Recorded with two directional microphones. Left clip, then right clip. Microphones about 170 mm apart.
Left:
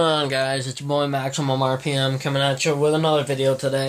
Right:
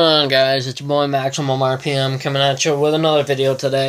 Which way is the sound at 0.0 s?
50° right (ahead or behind).